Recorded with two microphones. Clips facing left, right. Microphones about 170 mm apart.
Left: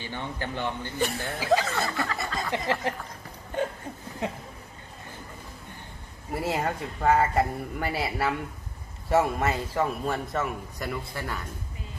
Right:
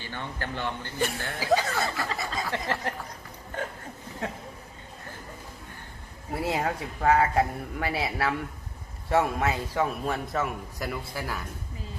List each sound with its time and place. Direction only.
0.0 s a man's voice: 15° left (ahead or behind)
1.4 s a man's voice: centre (ahead or behind)
2.1 s a sound: centre (ahead or behind)
2.8 s a man's voice: 15° left (ahead or behind)
4.2 s a man's voice: 20° left (ahead or behind)
6.3 s a man's voice: centre (ahead or behind)